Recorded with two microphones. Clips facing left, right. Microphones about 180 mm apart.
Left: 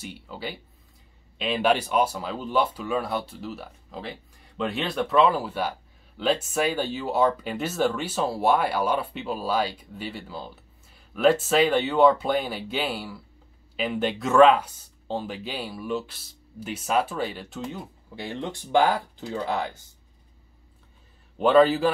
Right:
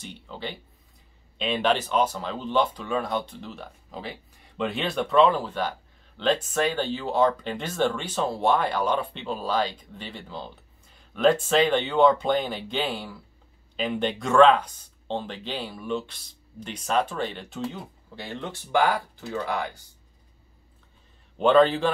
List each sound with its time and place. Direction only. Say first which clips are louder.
0.0 s speech: left 1 dB; 5° left (ahead or behind)
18.1 s speech: left 3 dB; 15° left (ahead or behind)
21.4 s a man's voice: left 1 dB; 5° left (ahead or behind)